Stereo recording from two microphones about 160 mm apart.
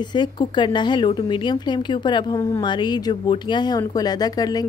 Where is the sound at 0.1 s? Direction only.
30° left (ahead or behind).